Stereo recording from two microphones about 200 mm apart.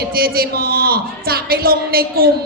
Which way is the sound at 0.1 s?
50° right (ahead or behind).